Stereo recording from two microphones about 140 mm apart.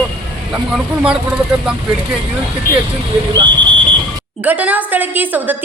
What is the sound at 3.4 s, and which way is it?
Speech, 35° right (ahead or behind).